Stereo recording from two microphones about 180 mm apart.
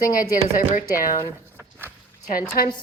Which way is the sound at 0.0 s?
50° left (ahead or behind).